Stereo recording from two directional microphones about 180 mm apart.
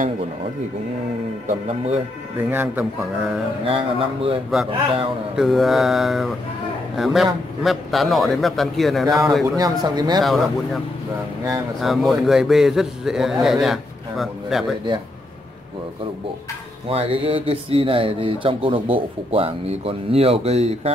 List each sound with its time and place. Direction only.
2.5 s speech: 10° right (ahead or behind)
3.6 s speech: 30° right (ahead or behind)
4.5 s a man's voice: centre (ahead or behind)
9.6 s speech: 20° right (ahead or behind)
10.2 s a man's voice: centre (ahead or behind)
11.8 s a man's voice: centre (ahead or behind)
16.9 s speech: 30° right (ahead or behind)